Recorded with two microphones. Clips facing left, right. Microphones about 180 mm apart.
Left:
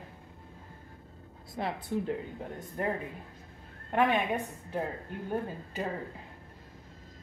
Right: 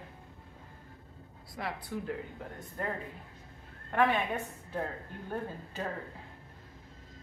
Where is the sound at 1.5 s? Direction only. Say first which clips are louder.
Left 5 dB; 25° left (ahead or behind).